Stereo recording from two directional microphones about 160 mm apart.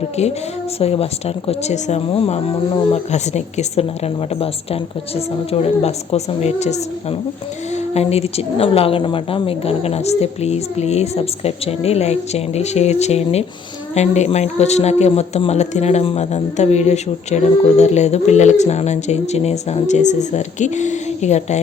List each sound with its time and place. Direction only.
0.8 s a woman's voice: 40° left (ahead or behind)
7.9 s a woman's voice: 40° left (ahead or behind)